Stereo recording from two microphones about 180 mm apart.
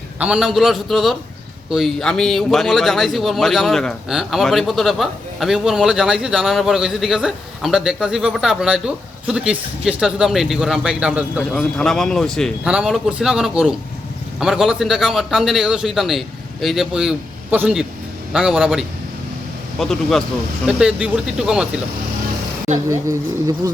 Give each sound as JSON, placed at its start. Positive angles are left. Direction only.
{"t": 0.2, "sound": "a man's voice", "side_deg": -5}
{"t": 22.7, "sound": "speech", "side_deg": -40}
{"t": 23.6, "sound": "speech", "side_deg": -20}